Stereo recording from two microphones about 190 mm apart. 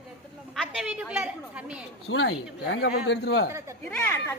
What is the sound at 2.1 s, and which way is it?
Speech, 80° left.